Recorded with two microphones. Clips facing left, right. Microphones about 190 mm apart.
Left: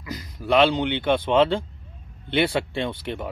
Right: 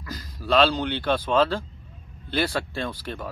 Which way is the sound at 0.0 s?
20° left (ahead or behind).